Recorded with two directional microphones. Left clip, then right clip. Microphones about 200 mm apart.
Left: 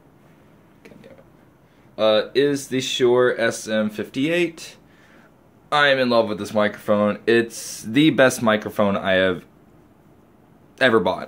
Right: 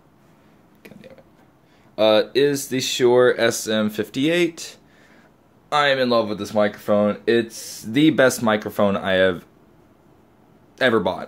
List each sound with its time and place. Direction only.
2.0 s speech: 35° right (ahead or behind)
5.7 s speech: 10° right (ahead or behind)
10.8 s speech: 5° right (ahead or behind)